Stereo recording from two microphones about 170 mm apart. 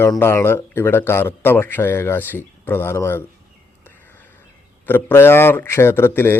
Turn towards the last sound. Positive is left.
turn(degrees=15)  # may be behind; listen again after turning